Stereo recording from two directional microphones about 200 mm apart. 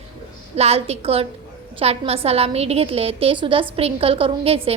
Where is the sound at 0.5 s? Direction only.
30° right (ahead or behind).